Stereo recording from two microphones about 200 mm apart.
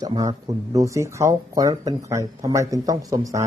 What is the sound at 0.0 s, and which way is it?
Speech, 20° right (ahead or behind).